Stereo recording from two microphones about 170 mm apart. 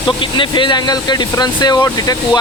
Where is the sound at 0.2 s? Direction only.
30° left (ahead or behind).